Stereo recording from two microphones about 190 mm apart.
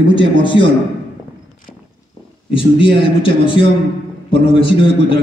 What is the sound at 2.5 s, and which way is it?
A man's voice, 25° left (ahead or behind).